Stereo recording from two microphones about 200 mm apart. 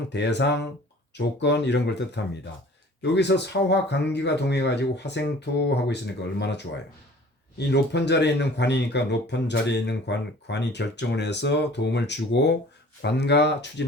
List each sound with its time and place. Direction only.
0.1 s speech: 60° left (ahead or behind)
7.7 s speech: 60° left (ahead or behind)